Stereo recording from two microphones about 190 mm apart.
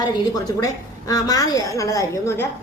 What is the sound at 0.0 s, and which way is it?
A woman's voice, 20° left (ahead or behind).